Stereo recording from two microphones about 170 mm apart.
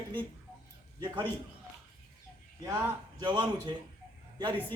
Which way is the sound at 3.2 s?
25° right (ahead or behind).